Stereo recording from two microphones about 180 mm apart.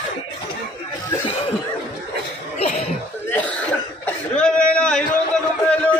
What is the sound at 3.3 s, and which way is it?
Cough, 10° left (ahead or behind).